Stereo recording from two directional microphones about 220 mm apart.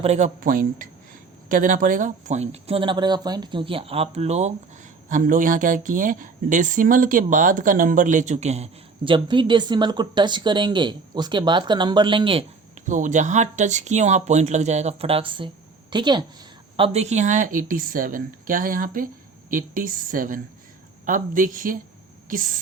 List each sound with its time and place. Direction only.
0.0 s speech: 30° right (ahead or behind)